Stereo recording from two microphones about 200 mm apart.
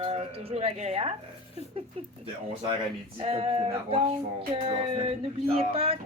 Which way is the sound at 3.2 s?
30° right (ahead or behind).